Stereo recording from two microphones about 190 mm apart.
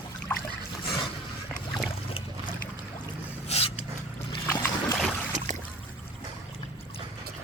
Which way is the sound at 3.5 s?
30° left (ahead or behind).